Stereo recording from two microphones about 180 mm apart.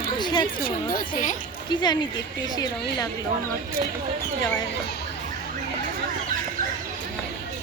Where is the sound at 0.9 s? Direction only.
45° left (ahead or behind).